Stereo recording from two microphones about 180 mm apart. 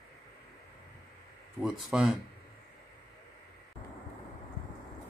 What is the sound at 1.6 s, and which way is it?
Speech, 5° right (ahead or behind).